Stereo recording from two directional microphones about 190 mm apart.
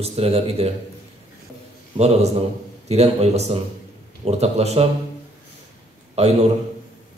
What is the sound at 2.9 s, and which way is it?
A man's voice, 35° right (ahead or behind).